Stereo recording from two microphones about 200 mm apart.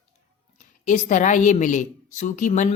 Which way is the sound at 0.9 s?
40° left (ahead or behind).